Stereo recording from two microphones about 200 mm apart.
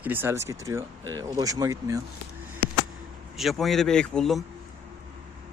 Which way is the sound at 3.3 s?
Centre (ahead or behind).